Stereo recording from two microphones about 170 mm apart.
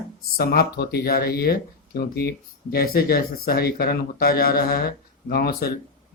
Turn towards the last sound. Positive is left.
turn(degrees=65)  # may be behind; listen again after turning